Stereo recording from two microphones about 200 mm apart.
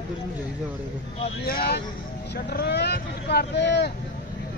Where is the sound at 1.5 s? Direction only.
50° left (ahead or behind).